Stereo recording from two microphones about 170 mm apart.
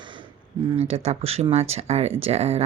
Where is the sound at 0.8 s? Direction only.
35° right (ahead or behind).